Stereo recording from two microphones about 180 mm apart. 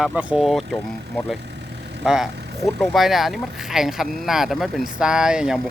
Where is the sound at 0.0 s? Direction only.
5° right (ahead or behind).